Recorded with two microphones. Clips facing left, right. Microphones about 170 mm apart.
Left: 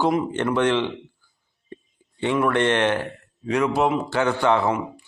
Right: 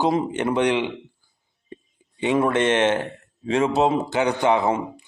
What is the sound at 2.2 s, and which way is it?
A man's voice, 20° right (ahead or behind).